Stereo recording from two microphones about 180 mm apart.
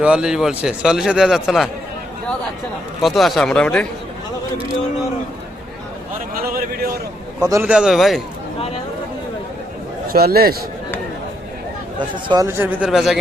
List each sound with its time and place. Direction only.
0.0 s a man's voice: 5° right (ahead or behind)
3.0 s a man's voice: centre (ahead or behind)
6.3 s a sound: 55° right (ahead or behind)
7.5 s a man's voice: 10° right (ahead or behind)
10.1 s a man's voice: 60° right (ahead or behind)
11.9 s speech: 25° right (ahead or behind)
12.5 s speech: 10° right (ahead or behind)